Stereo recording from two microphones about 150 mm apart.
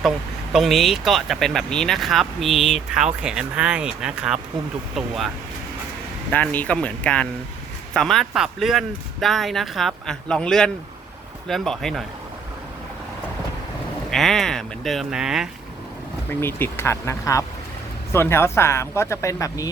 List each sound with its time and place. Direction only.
0.5 s speech: centre (ahead or behind)
6.3 s speech: 10° left (ahead or behind)
14.1 s speech: centre (ahead or behind)
16.3 s speech: 15° left (ahead or behind)